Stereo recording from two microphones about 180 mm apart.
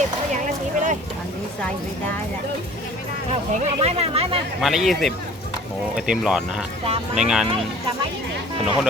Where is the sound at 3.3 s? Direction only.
35° right (ahead or behind).